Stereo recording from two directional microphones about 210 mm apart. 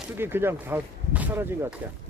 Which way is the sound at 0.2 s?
10° right (ahead or behind).